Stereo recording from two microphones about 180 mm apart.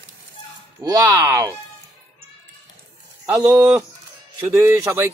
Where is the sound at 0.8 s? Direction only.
20° right (ahead or behind).